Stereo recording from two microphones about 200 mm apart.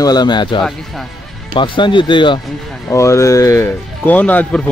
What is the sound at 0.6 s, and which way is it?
Speech, centre (ahead or behind).